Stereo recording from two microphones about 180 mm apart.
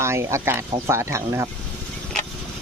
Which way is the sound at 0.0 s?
15° right (ahead or behind).